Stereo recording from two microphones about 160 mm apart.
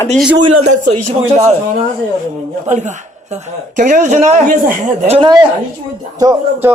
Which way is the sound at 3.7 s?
50° right (ahead or behind).